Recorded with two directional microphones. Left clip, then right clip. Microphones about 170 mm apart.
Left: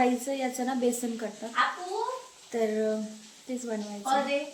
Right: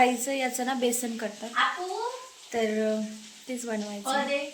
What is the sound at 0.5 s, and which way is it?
Speech, centre (ahead or behind).